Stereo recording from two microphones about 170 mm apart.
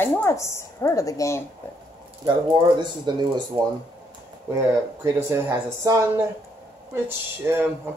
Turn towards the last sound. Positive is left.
turn(degrees=-15)  # may be behind; listen again after turning